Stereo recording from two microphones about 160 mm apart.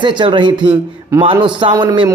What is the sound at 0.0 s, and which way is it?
A man's voice, 30° right (ahead or behind).